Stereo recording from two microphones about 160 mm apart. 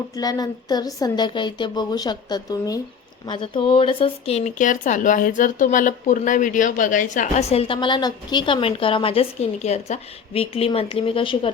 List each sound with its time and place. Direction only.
0.2 s a woman's voice: 25° left (ahead or behind)